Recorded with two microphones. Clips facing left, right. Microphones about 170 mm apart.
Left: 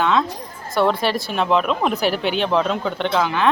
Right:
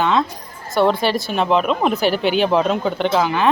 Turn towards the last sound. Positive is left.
turn(degrees=-5)  # may be behind; listen again after turning